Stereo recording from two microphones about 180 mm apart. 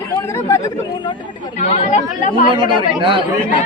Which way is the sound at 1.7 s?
40° left (ahead or behind).